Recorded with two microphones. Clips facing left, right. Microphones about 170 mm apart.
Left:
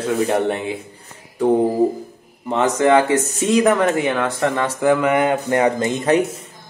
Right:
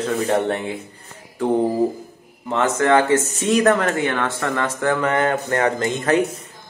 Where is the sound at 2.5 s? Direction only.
15° left (ahead or behind).